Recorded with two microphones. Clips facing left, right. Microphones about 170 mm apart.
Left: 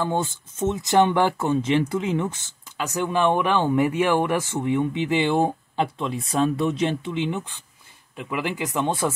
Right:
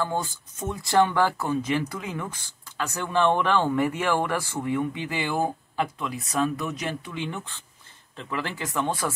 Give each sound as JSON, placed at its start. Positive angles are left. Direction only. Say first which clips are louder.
{"t": 0.0, "sound": "speech", "louder": "left 3 dB", "side_deg": 25}